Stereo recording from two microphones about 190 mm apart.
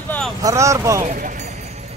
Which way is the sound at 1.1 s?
40° right (ahead or behind).